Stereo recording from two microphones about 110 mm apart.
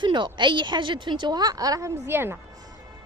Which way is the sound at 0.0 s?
45° right (ahead or behind).